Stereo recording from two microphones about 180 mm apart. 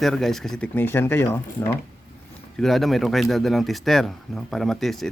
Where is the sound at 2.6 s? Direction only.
Centre (ahead or behind).